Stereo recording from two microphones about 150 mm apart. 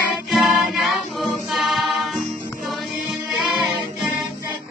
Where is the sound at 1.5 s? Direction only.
Centre (ahead or behind).